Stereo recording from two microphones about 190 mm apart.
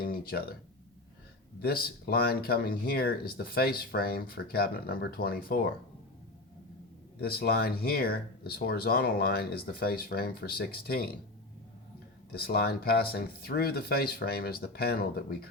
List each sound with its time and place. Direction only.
0.0 s a sound: 50° left (ahead or behind)
1.6 s speech: 55° left (ahead or behind)
7.2 s speech: 55° left (ahead or behind)
12.3 s speech: 55° left (ahead or behind)